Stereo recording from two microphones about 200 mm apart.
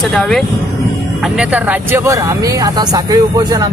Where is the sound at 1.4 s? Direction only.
5° right (ahead or behind).